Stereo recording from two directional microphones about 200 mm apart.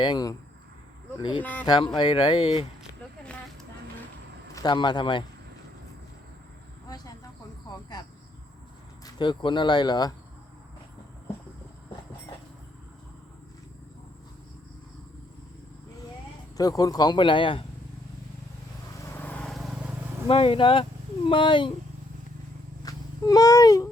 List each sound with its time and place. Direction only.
0.0 s speech: 20° left (ahead or behind)
1.4 s speech: 10° left (ahead or behind)
1.6 s speech: 20° left (ahead or behind)
4.5 s speech: 20° left (ahead or behind)
6.8 s a sound: 20° left (ahead or behind)
7.7 s cricket: 20° left (ahead or behind)
9.0 s speech: 25° left (ahead or behind)
16.6 s speech: 20° left (ahead or behind)
19.0 s vehicle: 10° left (ahead or behind)
20.2 s speech: 25° left (ahead or behind)
22.8 s a sound: 20° left (ahead or behind)